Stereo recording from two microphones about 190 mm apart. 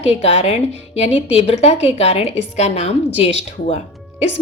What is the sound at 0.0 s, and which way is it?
A woman's voice, 35° left (ahead or behind).